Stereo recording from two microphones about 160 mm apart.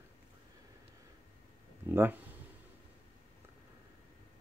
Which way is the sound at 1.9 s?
15° right (ahead or behind).